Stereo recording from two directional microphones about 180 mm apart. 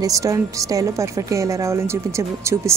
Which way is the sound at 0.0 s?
20° right (ahead or behind).